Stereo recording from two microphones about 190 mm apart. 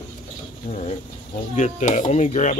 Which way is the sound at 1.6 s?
40° left (ahead or behind).